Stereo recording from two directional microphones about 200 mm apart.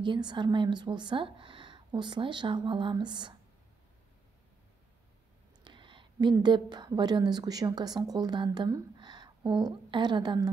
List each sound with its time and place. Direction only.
0.0 s a woman's voice: 25° right (ahead or behind)
5.6 s a woman's voice: 25° right (ahead or behind)